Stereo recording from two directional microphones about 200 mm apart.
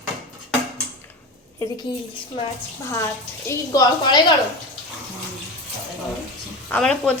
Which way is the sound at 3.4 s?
15° left (ahead or behind).